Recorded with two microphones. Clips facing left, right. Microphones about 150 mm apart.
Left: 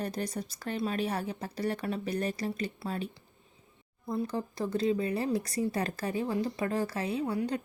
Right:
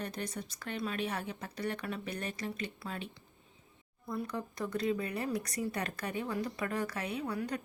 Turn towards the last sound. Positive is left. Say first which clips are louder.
# left 5 dB
turn(degrees=25)  # may be behind; listen again after turning